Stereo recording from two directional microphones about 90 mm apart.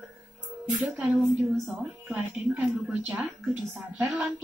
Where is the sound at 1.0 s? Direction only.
15° right (ahead or behind).